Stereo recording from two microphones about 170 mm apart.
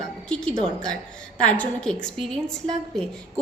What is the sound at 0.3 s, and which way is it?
A woman's voice, 5° left (ahead or behind).